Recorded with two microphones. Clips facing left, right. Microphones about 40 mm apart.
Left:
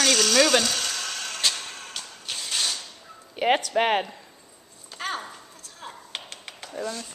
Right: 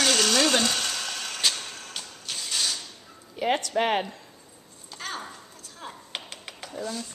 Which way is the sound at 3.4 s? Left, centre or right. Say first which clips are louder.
Left 3 dB; left.